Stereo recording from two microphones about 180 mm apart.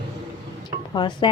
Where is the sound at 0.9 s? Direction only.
25° left (ahead or behind).